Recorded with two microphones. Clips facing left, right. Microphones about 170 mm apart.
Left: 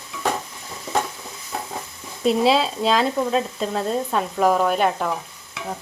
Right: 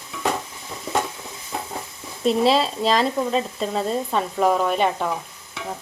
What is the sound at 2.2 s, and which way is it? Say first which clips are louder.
Speech: even; centre (ahead or behind).